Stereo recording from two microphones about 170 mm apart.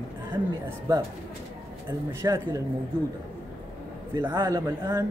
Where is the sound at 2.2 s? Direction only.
20° right (ahead or behind).